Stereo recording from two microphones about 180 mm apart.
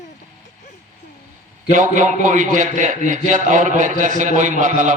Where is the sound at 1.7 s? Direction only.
45° right (ahead or behind).